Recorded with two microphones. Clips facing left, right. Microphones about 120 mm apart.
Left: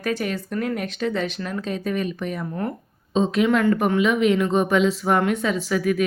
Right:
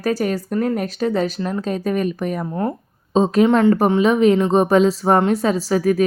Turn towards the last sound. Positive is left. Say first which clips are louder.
# right 5 dB
turn(degrees=-35)  # may be behind; listen again after turning